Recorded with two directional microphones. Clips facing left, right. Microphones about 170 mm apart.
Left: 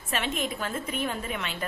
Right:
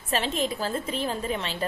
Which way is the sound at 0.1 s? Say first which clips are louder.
Right 3 dB; 35° right (ahead or behind).